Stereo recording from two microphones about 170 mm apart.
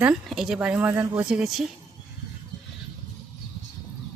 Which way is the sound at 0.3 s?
5° right (ahead or behind).